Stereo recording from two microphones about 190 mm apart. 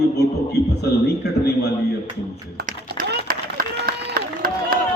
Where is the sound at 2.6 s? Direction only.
50° right (ahead or behind).